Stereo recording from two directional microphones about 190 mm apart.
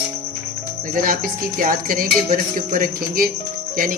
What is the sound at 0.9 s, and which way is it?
Speech, 45° right (ahead or behind).